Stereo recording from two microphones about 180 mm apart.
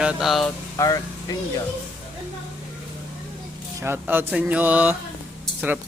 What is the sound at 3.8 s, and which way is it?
Speech, 10° right (ahead or behind).